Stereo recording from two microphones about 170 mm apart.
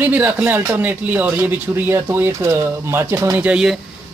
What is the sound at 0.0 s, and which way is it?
Speech, 10° right (ahead or behind).